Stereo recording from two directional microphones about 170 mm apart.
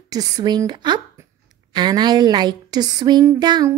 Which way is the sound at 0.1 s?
25° right (ahead or behind).